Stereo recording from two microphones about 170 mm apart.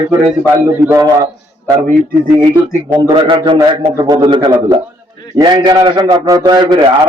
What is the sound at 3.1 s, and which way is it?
A man's voice, 30° right (ahead or behind).